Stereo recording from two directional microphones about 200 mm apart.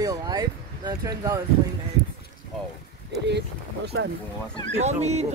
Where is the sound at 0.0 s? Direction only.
15° right (ahead or behind).